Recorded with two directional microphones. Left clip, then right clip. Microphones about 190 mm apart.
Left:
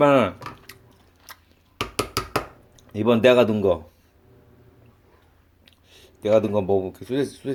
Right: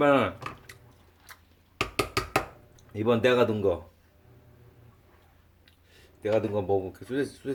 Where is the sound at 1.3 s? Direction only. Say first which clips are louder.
Left 6 dB; 25° left (ahead or behind).